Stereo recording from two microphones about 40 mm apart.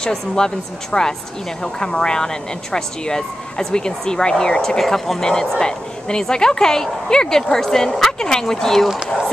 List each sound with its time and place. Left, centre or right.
0.0 s speech: centre
5.2 s speech: centre